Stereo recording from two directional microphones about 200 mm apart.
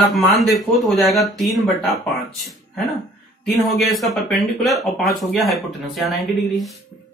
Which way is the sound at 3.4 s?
Centre (ahead or behind).